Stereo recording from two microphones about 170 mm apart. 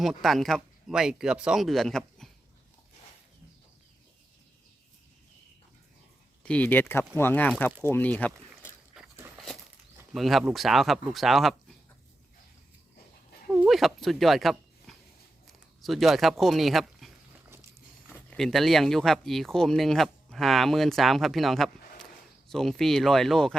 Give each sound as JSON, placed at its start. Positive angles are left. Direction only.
{"t": 0.0, "sound": "speech", "side_deg": 0}
{"t": 6.4, "sound": "speech", "side_deg": 10}
{"t": 8.9, "sound": "a sound", "side_deg": -5}
{"t": 10.1, "sound": "speech", "side_deg": 0}
{"t": 13.7, "sound": "speech", "side_deg": 0}
{"t": 17.5, "sound": "walk", "side_deg": -15}
{"t": 18.1, "sound": "speech", "side_deg": 5}